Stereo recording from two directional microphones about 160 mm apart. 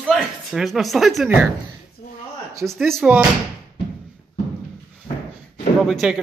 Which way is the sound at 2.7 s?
Centre (ahead or behind).